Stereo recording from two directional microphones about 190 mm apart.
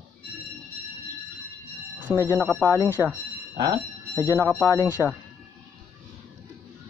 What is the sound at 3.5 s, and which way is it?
Bicycle bell, 20° right (ahead or behind).